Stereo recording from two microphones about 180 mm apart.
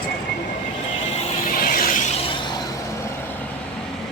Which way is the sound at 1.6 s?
50° left (ahead or behind).